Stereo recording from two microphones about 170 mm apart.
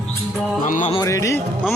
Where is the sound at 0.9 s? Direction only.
20° left (ahead or behind).